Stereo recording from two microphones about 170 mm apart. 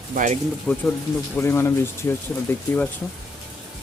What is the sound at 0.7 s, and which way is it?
Speech, 5° left (ahead or behind).